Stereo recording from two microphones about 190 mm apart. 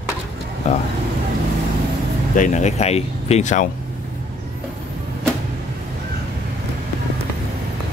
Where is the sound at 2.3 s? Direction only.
40° left (ahead or behind).